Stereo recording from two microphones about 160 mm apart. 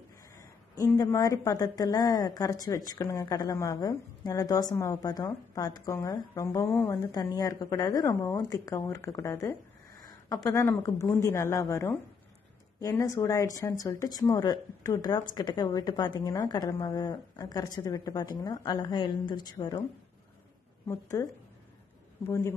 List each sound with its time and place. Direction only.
0.9 s a woman's voice: 20° left (ahead or behind)
20.9 s a woman's voice: 20° left (ahead or behind)
22.3 s a woman's voice: 20° left (ahead or behind)